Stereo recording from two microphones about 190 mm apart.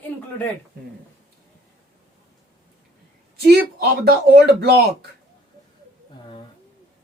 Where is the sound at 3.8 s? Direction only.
55° right (ahead or behind).